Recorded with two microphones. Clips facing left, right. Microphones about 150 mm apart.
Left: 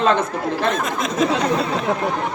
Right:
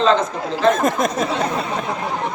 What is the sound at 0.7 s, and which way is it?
Speech, 50° right (ahead or behind).